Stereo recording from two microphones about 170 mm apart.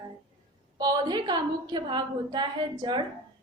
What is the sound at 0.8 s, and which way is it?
A woman's voice, 25° right (ahead or behind).